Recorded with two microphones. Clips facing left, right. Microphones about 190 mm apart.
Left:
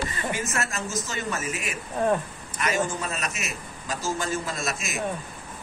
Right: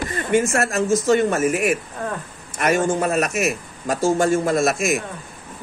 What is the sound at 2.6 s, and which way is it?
Speech, 55° right (ahead or behind).